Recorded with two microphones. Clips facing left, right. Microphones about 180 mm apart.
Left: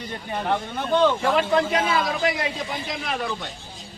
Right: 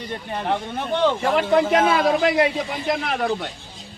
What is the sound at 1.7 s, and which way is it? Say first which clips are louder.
A man's voice: right 6 dB; 60° right (ahead or behind).